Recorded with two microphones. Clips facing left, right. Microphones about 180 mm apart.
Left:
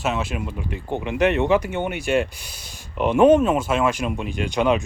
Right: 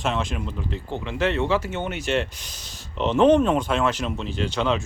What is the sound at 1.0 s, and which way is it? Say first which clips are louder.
Speech: left 4 dB; 15° left (ahead or behind).